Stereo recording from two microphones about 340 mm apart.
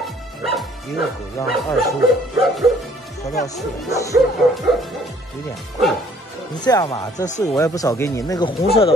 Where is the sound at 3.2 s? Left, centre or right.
Centre.